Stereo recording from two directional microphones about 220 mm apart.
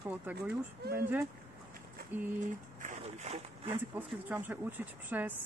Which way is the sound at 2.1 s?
10° right (ahead or behind).